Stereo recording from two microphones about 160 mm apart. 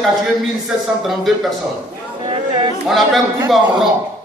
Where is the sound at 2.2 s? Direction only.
30° right (ahead or behind).